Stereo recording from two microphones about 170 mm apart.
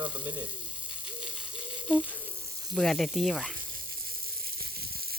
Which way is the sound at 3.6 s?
60° right (ahead or behind).